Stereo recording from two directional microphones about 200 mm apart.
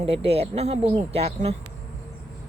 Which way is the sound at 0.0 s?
30° right (ahead or behind).